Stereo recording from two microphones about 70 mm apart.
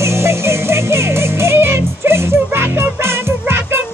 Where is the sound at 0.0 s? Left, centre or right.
Right.